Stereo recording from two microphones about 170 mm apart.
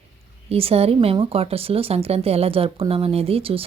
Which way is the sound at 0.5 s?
35° right (ahead or behind).